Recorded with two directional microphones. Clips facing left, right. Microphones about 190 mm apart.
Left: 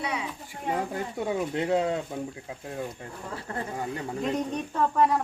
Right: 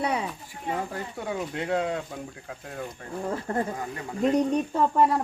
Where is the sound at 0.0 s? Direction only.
55° right (ahead or behind).